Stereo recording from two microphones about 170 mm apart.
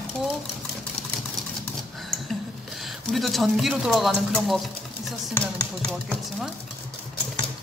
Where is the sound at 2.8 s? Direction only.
Centre (ahead or behind).